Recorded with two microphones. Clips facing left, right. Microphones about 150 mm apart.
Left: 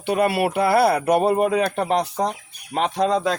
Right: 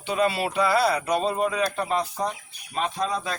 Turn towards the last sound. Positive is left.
turn(degrees=85)